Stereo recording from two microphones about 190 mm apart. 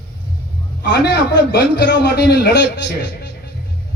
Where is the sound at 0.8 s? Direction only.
60° left (ahead or behind).